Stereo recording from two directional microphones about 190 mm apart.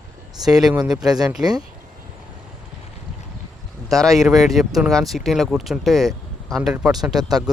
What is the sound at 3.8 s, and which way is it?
Speech, centre (ahead or behind).